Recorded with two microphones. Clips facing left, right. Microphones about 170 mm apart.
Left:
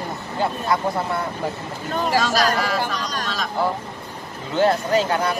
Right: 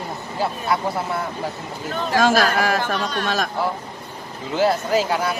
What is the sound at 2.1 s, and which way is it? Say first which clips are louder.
Speech: right 4 dB; 50° right (ahead or behind).